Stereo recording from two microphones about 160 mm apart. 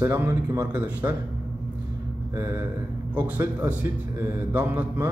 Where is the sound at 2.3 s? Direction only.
15° right (ahead or behind).